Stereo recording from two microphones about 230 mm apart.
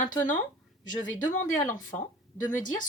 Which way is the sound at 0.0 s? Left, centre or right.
Left.